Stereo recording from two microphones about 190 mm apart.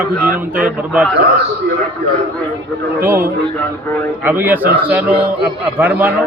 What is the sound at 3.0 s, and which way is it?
A man's voice, 10° right (ahead or behind).